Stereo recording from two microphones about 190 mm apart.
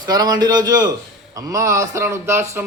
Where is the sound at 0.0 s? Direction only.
20° right (ahead or behind).